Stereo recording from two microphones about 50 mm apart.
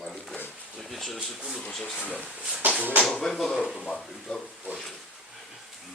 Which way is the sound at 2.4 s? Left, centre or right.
Right.